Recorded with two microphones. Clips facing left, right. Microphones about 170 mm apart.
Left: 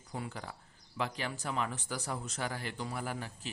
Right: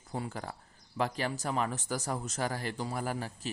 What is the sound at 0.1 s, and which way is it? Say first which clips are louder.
A man's voice: right 4 dB; 40° right (ahead or behind).